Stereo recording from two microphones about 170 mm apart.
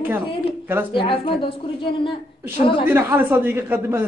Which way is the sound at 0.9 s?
30° left (ahead or behind).